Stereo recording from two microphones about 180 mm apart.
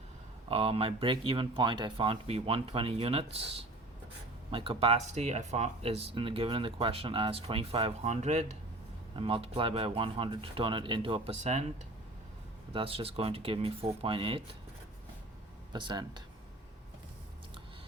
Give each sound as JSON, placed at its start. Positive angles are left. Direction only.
{"t": 0.4, "sound": "speech", "side_deg": -30}
{"t": 12.7, "sound": "speech", "side_deg": -30}
{"t": 15.7, "sound": "speech", "side_deg": -25}